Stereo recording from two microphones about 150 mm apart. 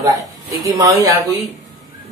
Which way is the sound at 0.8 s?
25° right (ahead or behind).